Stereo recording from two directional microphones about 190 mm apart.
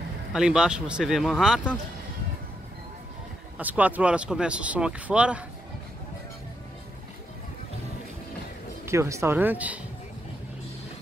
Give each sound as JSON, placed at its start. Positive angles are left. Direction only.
{"t": 0.3, "sound": "speech", "side_deg": -5}
{"t": 3.5, "sound": "speech", "side_deg": -10}
{"t": 8.8, "sound": "speech", "side_deg": -15}